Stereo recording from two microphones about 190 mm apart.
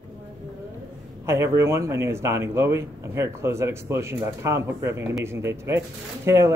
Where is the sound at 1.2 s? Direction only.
15° right (ahead or behind).